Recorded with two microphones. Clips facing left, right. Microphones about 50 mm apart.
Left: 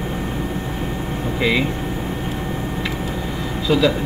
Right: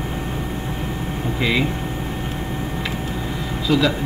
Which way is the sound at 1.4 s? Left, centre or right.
Centre.